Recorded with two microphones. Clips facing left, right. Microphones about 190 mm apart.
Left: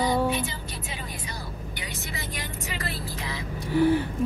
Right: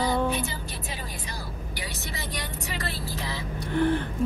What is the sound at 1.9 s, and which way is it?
Vehicle, 40° right (ahead or behind).